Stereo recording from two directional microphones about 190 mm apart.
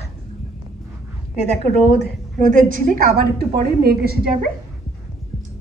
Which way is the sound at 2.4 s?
45° right (ahead or behind).